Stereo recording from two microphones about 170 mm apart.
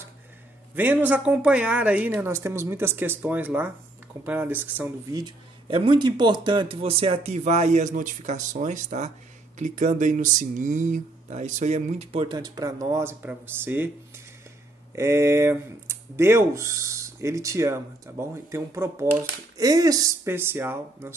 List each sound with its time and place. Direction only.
0.7 s speech: 10° right (ahead or behind)
5.1 s speech: 30° right (ahead or behind); by 21.2 s 15° right (ahead or behind)